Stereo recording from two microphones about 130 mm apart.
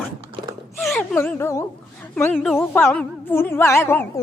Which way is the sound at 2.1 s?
15° left (ahead or behind).